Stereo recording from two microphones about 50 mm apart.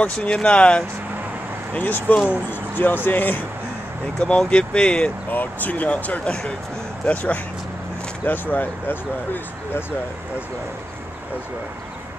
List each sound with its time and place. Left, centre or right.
0.0 s speech: left
1.7 s speech: left
4.5 s speech: centre
5.3 s speech: left
8.3 s speech: left